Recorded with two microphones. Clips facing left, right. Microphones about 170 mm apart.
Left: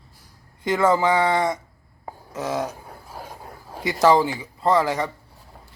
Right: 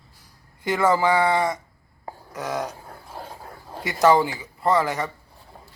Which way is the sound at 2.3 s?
25° left (ahead or behind).